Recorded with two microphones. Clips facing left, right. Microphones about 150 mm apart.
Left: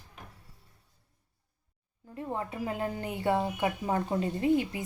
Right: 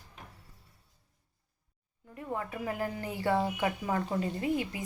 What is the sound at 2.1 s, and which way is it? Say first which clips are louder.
Speech: left 2 dB; 25° left (ahead or behind).